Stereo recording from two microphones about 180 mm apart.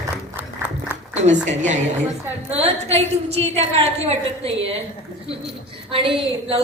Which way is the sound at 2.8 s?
35° right (ahead or behind).